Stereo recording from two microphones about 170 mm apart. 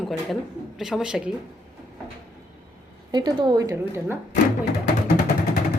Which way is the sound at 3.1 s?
25° right (ahead or behind).